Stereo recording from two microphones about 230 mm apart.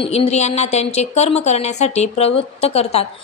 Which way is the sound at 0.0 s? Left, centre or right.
Left.